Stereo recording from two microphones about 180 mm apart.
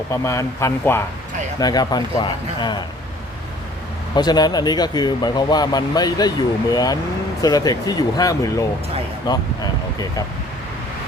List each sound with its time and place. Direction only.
0.1 s speech: 15° left (ahead or behind)
4.1 s speech: 20° left (ahead or behind)